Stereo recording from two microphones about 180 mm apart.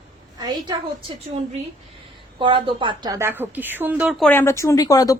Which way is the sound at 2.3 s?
30° right (ahead or behind).